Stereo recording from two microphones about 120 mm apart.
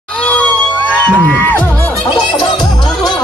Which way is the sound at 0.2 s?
10° left (ahead or behind).